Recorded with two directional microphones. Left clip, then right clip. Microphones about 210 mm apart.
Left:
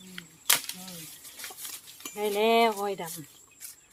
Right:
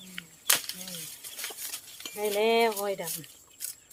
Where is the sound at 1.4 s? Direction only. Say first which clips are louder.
Right 3 dB; 50° right (ahead or behind).